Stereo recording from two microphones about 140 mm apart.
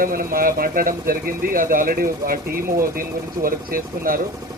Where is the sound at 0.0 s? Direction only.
90° right.